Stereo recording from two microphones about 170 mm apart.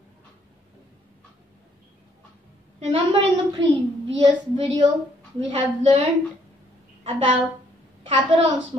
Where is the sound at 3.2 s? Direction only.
90° right.